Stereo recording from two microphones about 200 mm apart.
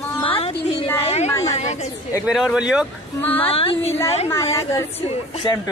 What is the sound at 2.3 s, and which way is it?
Speech, centre (ahead or behind).